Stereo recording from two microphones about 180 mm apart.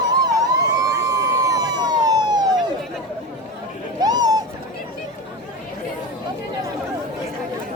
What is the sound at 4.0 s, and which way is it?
Bird, 20° right (ahead or behind).